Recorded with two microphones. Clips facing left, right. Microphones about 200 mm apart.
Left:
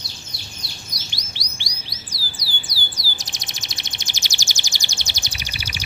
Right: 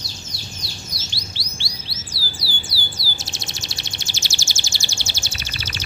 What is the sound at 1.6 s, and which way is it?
Bird, 15° left (ahead or behind).